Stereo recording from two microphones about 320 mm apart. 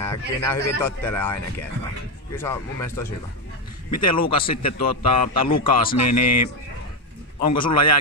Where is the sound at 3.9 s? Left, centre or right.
Left.